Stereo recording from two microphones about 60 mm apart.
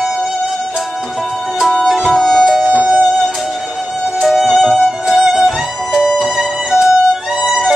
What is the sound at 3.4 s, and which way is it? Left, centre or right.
Music, centre.